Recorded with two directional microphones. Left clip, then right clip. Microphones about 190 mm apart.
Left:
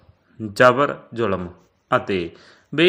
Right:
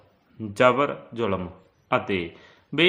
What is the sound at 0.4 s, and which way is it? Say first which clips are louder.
Speech: left 5 dB; 25° left (ahead or behind).